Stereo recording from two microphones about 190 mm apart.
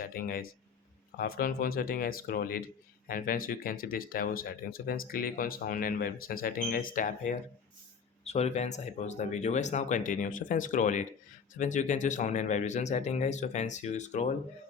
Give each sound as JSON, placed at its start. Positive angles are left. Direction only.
{"t": 0.0, "sound": "speech", "side_deg": 50}